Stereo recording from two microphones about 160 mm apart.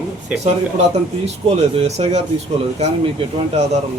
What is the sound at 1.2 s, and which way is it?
Speech, 40° right (ahead or behind).